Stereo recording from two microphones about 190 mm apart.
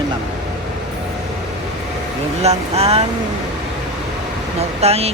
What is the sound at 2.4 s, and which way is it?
Speech, 30° right (ahead or behind).